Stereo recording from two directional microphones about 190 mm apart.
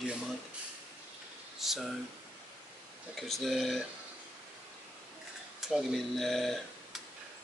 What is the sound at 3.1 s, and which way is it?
Speech, centre (ahead or behind).